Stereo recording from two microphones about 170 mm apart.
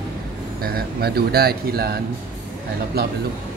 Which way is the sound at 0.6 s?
65° right (ahead or behind).